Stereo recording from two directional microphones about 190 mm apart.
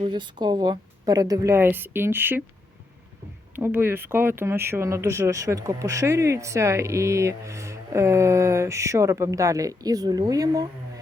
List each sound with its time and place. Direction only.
0.0 s speech: 25° right (ahead or behind)
3.5 s speech: 10° right (ahead or behind)